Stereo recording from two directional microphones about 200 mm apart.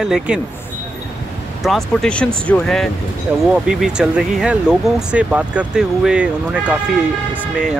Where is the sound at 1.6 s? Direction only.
Centre (ahead or behind).